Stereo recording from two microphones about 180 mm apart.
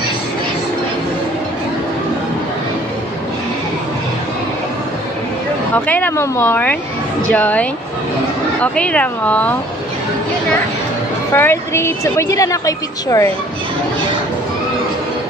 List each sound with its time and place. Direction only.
5.9 s a woman's voice: 10° left (ahead or behind)
8.7 s a woman's voice: 5° left (ahead or behind)
11.3 s a woman's voice: 15° left (ahead or behind)